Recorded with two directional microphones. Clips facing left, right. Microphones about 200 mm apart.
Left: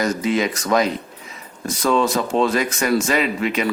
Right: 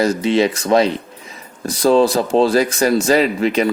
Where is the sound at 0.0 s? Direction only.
30° right (ahead or behind).